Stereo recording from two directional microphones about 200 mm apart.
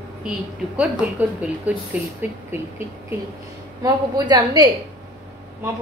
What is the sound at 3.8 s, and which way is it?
Speech, 20° right (ahead or behind).